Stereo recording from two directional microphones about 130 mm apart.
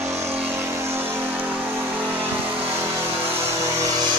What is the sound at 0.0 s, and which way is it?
Vehicle, 20° right (ahead or behind).